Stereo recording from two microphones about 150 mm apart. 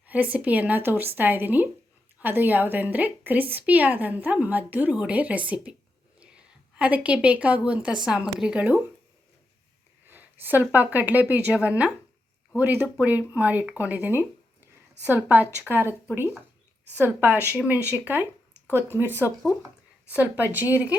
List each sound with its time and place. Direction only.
0.0 s a woman's voice: 10° right (ahead or behind)
10.1 s a woman's voice: 10° right (ahead or behind)